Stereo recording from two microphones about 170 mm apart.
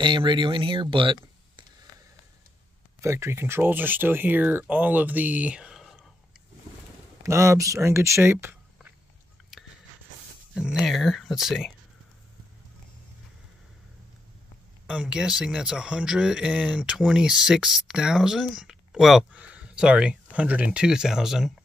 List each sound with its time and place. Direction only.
0.0 s speech: 30° right (ahead or behind)
3.0 s speech: 15° right (ahead or behind)
7.2 s speech: 15° right (ahead or behind)
10.5 s speech: 5° right (ahead or behind)
14.9 s speech: 5° right (ahead or behind)